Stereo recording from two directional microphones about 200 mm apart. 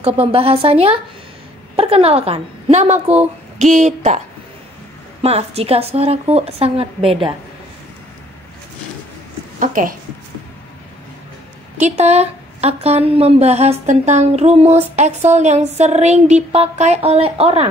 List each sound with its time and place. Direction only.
0.0 s a woman's voice: 30° right (ahead or behind)
5.2 s a woman's voice: 30° right (ahead or behind)
9.6 s a woman's voice: 40° right (ahead or behind)
11.8 s a woman's voice: 35° right (ahead or behind)